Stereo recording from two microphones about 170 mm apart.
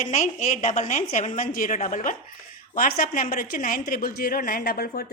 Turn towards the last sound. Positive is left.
turn(degrees=65)  # may be behind; listen again after turning